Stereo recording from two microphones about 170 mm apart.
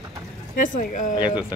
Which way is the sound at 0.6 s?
50° left (ahead or behind).